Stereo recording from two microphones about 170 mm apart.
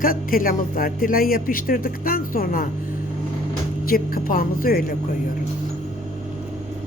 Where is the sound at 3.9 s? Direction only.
60° left (ahead or behind).